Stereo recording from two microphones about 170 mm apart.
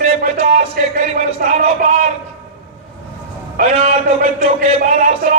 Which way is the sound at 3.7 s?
40° right (ahead or behind).